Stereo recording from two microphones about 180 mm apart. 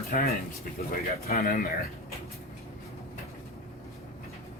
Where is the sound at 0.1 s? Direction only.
55° left (ahead or behind).